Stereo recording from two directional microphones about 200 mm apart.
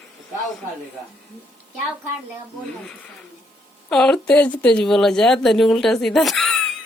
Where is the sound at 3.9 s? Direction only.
5° left (ahead or behind).